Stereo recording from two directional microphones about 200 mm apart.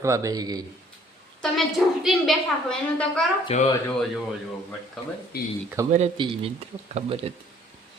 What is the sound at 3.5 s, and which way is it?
Speech, 30° left (ahead or behind).